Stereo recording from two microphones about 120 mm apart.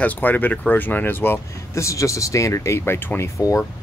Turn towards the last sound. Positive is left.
turn(degrees=25)  # may be behind; listen again after turning